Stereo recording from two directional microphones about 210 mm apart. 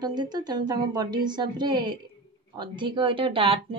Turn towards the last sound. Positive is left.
turn(degrees=-25)  # may be behind; listen again after turning